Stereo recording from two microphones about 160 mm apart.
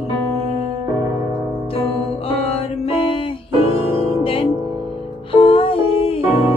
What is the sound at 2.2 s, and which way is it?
Music, 35° left (ahead or behind).